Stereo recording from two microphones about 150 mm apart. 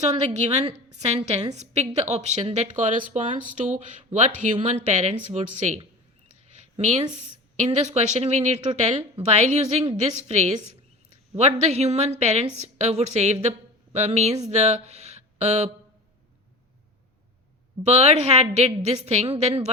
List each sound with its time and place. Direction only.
0.0 s a woman's voice: 50° right (ahead or behind)
17.8 s speech: 45° right (ahead or behind)